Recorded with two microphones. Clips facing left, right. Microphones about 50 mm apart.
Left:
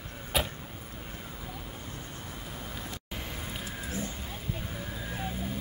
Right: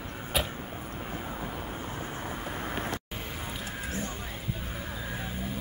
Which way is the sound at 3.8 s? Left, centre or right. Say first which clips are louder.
Right 1 dB; right.